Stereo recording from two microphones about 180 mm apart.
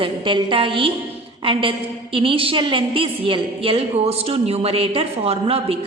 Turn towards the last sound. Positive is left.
turn(degrees=-30)  # may be behind; listen again after turning